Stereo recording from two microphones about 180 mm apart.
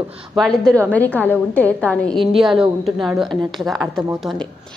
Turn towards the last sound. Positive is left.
turn(degrees=0)  # may be behind; listen again after turning